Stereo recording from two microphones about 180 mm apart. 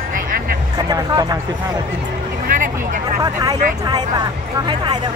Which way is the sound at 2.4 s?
50° right (ahead or behind).